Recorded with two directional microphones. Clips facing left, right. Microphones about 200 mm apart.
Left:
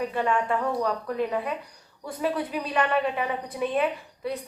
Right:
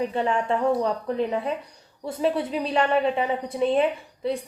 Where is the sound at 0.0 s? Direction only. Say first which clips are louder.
Right 1 dB; 25° right (ahead or behind).